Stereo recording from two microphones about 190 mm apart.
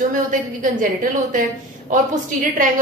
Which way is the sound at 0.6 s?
45° right (ahead or behind).